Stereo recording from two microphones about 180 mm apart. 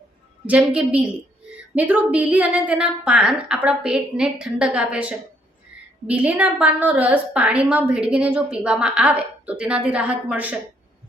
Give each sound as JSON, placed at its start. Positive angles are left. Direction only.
{"t": 0.4, "sound": "a woman's voice", "side_deg": -5}